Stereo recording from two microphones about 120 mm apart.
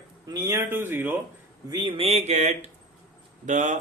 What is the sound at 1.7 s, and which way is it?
Speech, 45° right (ahead or behind).